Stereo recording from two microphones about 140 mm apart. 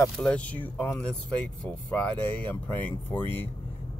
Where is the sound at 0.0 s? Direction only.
5° left (ahead or behind).